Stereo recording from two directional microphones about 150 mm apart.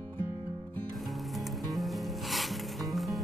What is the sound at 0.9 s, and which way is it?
Music, centre (ahead or behind).